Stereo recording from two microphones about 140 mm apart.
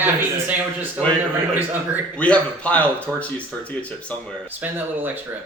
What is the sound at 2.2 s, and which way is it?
Speech, 10° left (ahead or behind).